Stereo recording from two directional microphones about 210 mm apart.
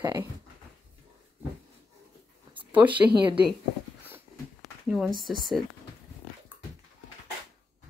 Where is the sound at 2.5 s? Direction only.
10° right (ahead or behind).